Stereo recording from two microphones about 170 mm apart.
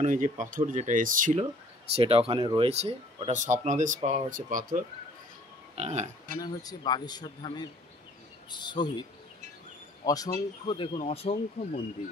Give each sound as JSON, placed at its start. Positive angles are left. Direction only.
{"t": 0.0, "sound": "speech", "side_deg": -50}
{"t": 2.0, "sound": "speech", "side_deg": -35}
{"t": 5.8, "sound": "speech", "side_deg": -40}
{"t": 6.4, "sound": "a man's voice", "side_deg": 25}
{"t": 10.0, "sound": "a man's voice", "side_deg": 20}
{"t": 11.0, "sound": "speech", "side_deg": 35}